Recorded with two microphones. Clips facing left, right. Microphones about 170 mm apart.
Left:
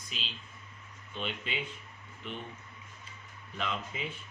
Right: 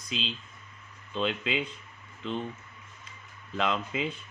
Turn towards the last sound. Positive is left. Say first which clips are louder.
# right 7 dB
turn(degrees=-75)  # may be behind; listen again after turning